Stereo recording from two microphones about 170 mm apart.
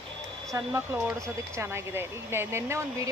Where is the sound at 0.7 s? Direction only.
10° right (ahead or behind).